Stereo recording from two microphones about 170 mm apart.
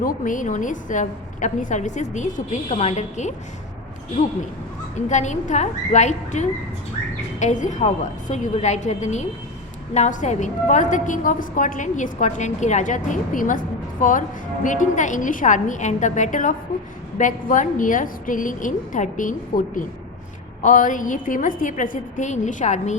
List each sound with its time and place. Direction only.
0.0 s a woman's voice: 50° left (ahead or behind)
4.9 s a woman's voice: 45° left (ahead or behind)